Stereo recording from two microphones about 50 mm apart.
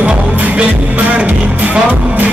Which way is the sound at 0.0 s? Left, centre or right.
Right.